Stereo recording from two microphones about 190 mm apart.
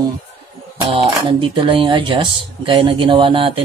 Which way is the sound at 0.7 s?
30° right (ahead or behind).